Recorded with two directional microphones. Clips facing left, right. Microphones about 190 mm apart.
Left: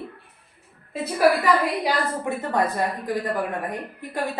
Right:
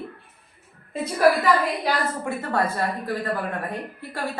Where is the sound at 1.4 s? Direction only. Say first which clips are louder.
Even; 15° left (ahead or behind).